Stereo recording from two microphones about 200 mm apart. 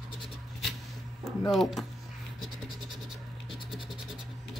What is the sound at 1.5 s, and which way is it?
Speech, centre (ahead or behind).